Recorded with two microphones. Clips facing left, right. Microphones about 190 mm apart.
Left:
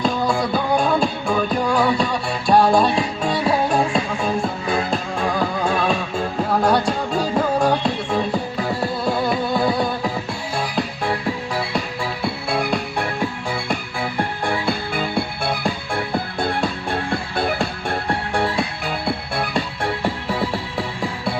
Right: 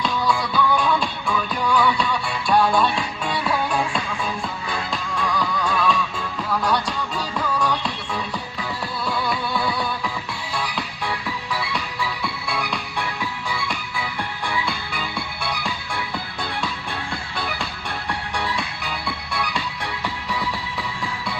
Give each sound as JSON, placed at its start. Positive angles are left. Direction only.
{"t": 0.0, "sound": "music", "side_deg": 45}